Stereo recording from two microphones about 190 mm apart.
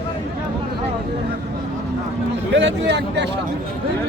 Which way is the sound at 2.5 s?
65° right (ahead or behind).